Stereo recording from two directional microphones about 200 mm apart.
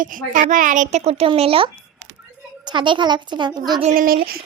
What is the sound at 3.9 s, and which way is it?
Speech, 45° right (ahead or behind).